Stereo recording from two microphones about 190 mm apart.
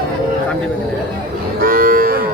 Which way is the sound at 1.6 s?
50° right (ahead or behind).